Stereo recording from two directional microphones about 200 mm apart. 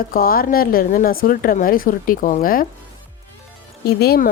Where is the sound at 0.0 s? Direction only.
45° left (ahead or behind).